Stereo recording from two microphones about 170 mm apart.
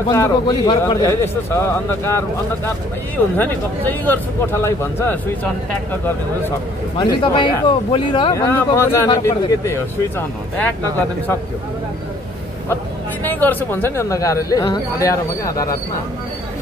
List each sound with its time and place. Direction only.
0.1 s speech: 20° left (ahead or behind)
1.2 s speech: 15° left (ahead or behind)
3.3 s speech: 10° left (ahead or behind)
7.0 s speech: 25° left (ahead or behind)
13.2 s speech: 10° left (ahead or behind)